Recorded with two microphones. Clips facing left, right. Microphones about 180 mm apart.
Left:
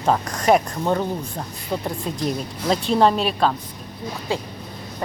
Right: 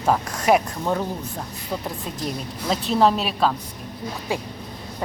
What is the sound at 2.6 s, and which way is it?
Speech, centre (ahead or behind).